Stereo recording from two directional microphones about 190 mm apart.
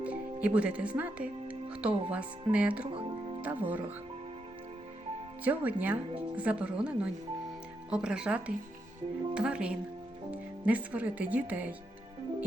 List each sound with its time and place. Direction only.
0.0 s music: 5° right (ahead or behind)
2.0 s speech: 5° right (ahead or behind)
2.9 s music: 30° right (ahead or behind)
3.4 s speech: 10° right (ahead or behind)
5.5 s speech: 10° right (ahead or behind)